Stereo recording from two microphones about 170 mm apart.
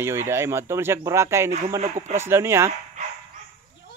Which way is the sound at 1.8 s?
40° right (ahead or behind).